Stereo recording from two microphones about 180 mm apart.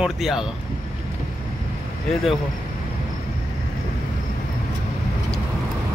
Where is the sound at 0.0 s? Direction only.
Centre (ahead or behind).